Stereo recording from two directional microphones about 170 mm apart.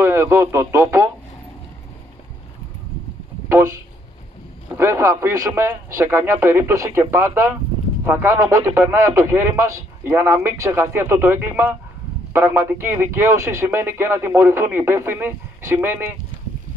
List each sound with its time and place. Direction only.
0.0 s speech: 15° right (ahead or behind)
3.4 s vehicle: 15° right (ahead or behind)
4.7 s speech: 15° right (ahead or behind)